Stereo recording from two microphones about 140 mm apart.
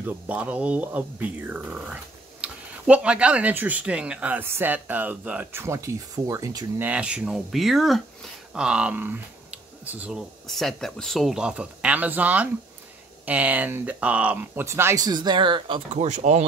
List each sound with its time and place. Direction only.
0.0 s speech: 10° right (ahead or behind)
6.9 s speech: 10° right (ahead or behind); by 15.8 s 35° right (ahead or behind)
15.9 s speech: 55° right (ahead or behind)